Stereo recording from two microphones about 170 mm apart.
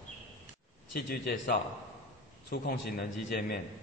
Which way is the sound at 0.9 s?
60° left (ahead or behind).